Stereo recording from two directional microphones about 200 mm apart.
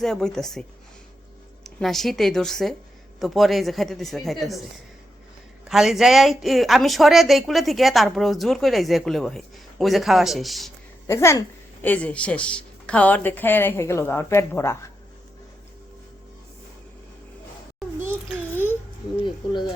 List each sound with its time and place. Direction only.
0.0 s speech: 5° left (ahead or behind)
1.6 s speech: centre (ahead or behind)
5.6 s speech: centre (ahead or behind)
11.0 s a woman's voice: 15° left (ahead or behind)
18.5 s a sound: 10° left (ahead or behind)
19.2 s a sound: 25° left (ahead or behind)